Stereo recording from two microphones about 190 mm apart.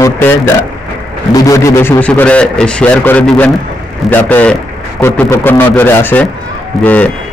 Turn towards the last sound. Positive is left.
turn(degrees=10)  # may be behind; listen again after turning